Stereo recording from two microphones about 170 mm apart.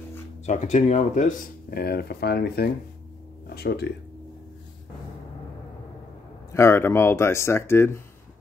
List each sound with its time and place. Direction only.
0.5 s speech: 45° left (ahead or behind); by 3.9 s 70° left (ahead or behind)
6.5 s speech: 15° left (ahead or behind)